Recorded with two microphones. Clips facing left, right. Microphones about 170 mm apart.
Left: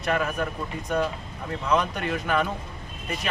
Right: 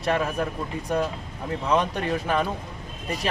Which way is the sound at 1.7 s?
30° right (ahead or behind).